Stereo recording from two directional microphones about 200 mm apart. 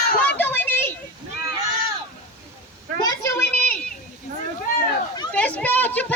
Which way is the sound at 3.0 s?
15° left (ahead or behind).